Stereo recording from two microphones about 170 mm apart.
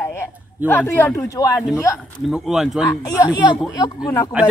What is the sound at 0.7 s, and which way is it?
Speech, 10° left (ahead or behind).